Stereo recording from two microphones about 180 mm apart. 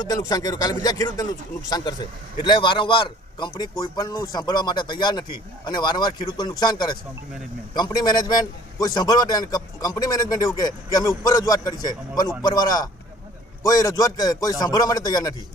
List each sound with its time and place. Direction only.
0.1 s a man's voice: 20° left (ahead or behind)